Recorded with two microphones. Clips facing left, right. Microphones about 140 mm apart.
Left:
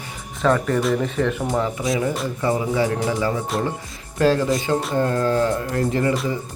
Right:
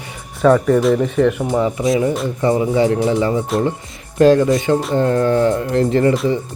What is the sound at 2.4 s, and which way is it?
Speech, 25° right (ahead or behind).